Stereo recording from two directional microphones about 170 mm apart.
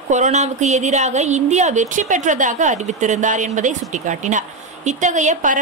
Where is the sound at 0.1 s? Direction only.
45° right (ahead or behind).